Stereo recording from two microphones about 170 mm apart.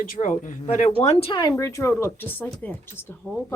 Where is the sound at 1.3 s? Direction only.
25° left (ahead or behind).